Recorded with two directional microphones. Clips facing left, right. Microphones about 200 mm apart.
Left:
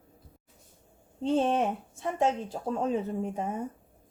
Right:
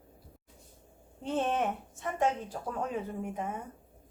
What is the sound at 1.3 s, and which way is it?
A woman's voice, 30° left (ahead or behind).